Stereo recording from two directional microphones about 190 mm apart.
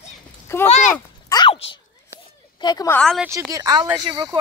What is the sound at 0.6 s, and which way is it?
Speech, 35° left (ahead or behind).